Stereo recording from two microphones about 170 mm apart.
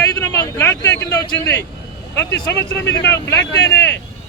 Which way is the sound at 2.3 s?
90° left.